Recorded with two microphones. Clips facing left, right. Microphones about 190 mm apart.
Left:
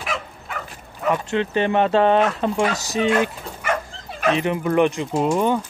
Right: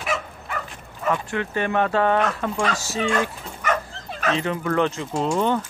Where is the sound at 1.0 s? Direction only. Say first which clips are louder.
Left 3 dB; 20° left (ahead or behind).